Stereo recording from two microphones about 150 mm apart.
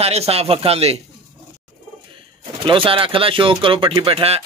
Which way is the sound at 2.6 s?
35° right (ahead or behind).